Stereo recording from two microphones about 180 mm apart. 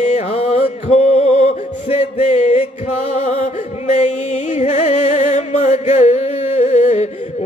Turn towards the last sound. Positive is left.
turn(degrees=40)  # may be behind; listen again after turning